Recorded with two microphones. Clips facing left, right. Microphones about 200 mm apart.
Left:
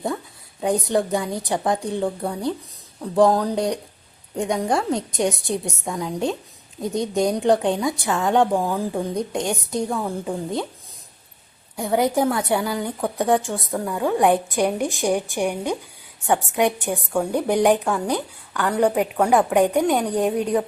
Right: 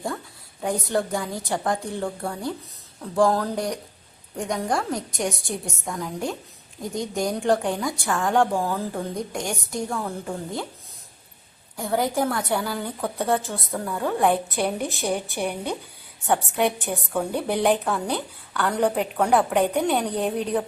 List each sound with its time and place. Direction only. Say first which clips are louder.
0.6 s a woman's voice: left 4 dB; 20° left (ahead or behind)
11.8 s a woman's voice: left 4 dB; 20° left (ahead or behind)
16.9 s speech: left 3 dB; 5° left (ahead or behind)
17.3 s a woman's voice: left 4 dB; 15° left (ahead or behind)
17.8 s speech: left 3 dB; centre (ahead or behind)
18.1 s a woman's voice: left 3 dB; 10° left (ahead or behind)